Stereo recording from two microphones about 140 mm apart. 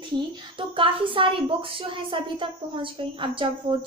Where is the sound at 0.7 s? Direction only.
40° right (ahead or behind).